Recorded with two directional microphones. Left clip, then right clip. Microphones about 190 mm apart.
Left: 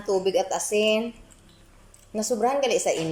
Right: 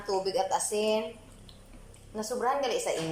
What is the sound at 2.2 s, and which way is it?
Speech, 15° left (ahead or behind).